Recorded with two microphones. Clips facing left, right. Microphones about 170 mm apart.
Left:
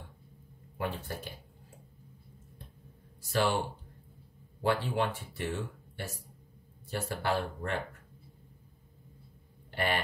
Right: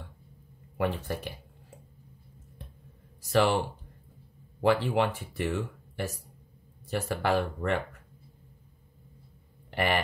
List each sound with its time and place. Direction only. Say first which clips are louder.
0.7 s speech: right 6 dB; 80° right
3.3 s speech: right 5 dB; 90° right
4.6 s speech: right 5 dB; 85° right